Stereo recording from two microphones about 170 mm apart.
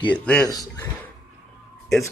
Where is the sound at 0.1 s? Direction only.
5° left (ahead or behind).